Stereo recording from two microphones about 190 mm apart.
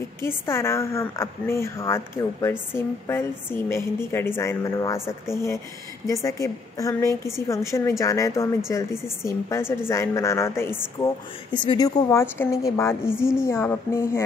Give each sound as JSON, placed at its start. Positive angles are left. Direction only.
{"t": 0.2, "sound": "a woman's voice", "side_deg": 15}